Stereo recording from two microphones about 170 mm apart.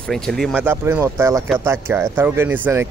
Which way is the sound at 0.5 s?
15° right (ahead or behind).